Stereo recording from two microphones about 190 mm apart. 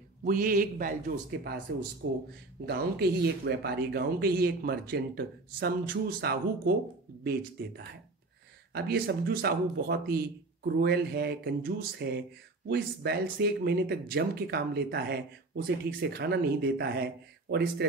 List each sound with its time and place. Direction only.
0.2 s a man's voice: 45° right (ahead or behind)
2.0 s speech: 60° right (ahead or behind)
8.7 s speech: 55° right (ahead or behind)